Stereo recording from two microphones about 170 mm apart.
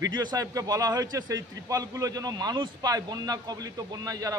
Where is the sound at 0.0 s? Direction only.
25° right (ahead or behind).